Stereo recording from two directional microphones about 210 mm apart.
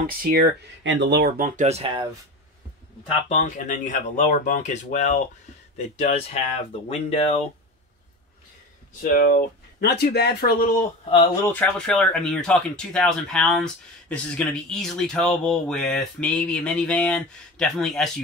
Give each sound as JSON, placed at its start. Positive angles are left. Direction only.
{"t": 0.0, "sound": "speech", "side_deg": -45}
{"t": 0.8, "sound": "speech", "side_deg": -55}
{"t": 1.6, "sound": "speech", "side_deg": -30}
{"t": 3.3, "sound": "speech", "side_deg": 35}
{"t": 9.0, "sound": "speech", "side_deg": 45}
{"t": 11.4, "sound": "speech", "side_deg": 5}